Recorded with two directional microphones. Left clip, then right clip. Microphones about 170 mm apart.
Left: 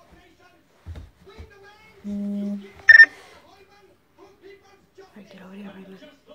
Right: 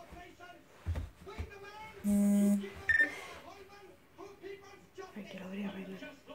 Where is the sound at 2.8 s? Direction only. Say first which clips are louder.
Left 19 dB; 50° left (ahead or behind).